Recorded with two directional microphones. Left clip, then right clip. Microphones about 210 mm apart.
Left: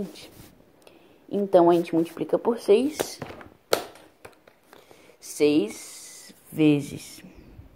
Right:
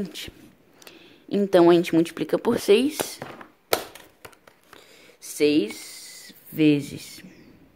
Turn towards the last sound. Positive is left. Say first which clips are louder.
# right 1 dB
turn(degrees=-5)  # may be behind; listen again after turning